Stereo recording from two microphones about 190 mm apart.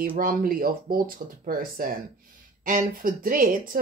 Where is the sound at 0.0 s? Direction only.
45° right (ahead or behind).